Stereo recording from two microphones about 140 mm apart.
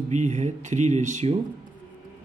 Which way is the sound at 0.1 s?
55° right (ahead or behind).